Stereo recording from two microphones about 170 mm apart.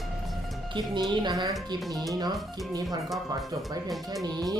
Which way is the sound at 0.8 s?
25° right (ahead or behind).